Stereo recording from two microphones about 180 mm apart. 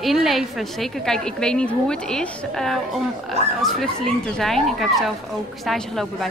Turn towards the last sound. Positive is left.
turn(degrees=0)  # may be behind; listen again after turning